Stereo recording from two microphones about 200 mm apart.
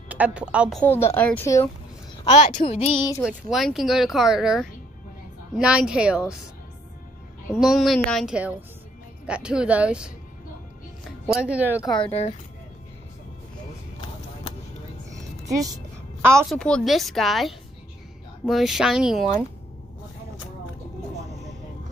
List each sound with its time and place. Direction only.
0.1 s speech: 5° right (ahead or behind)
0.8 s a woman's voice: 10° left (ahead or behind)
2.2 s speech: 30° left (ahead or behind)
3.3 s speech: centre (ahead or behind)
7.5 s speech: centre (ahead or behind)
11.3 s speech: 5° right (ahead or behind)
12.0 s speech: 30° left (ahead or behind)
15.0 s music: 15° right (ahead or behind)
16.4 s speech: 5° left (ahead or behind)
21.2 s vehicle: 35° right (ahead or behind)